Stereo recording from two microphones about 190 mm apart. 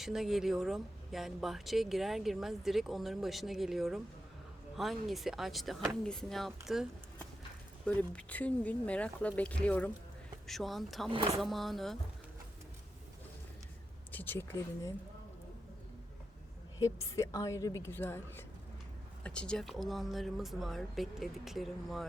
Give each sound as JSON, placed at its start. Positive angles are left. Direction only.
{"t": 0.0, "sound": "speech", "side_deg": 0}
{"t": 11.1, "sound": "speech", "side_deg": -25}
{"t": 11.3, "sound": "speech", "side_deg": 0}
{"t": 14.1, "sound": "speech", "side_deg": 10}
{"t": 16.8, "sound": "speech", "side_deg": 15}